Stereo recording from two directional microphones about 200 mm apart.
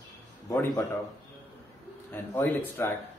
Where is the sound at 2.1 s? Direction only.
10° left (ahead or behind).